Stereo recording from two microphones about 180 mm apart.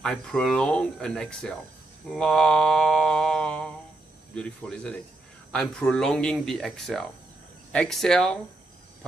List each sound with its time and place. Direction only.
0.0 s speech: 5° left (ahead or behind)